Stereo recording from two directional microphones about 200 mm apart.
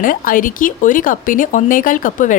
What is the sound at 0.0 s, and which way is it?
Speech, 45° left (ahead or behind).